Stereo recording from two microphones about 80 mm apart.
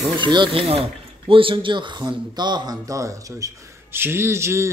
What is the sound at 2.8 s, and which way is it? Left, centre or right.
Speech, right.